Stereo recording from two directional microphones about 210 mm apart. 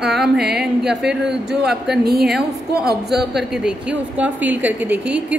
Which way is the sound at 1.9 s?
50° right (ahead or behind).